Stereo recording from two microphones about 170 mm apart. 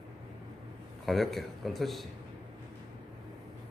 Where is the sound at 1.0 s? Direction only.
Centre (ahead or behind).